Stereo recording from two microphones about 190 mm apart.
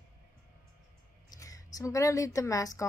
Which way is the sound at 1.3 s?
15° left (ahead or behind).